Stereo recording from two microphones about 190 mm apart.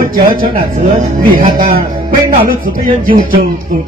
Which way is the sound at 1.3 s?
45° right (ahead or behind).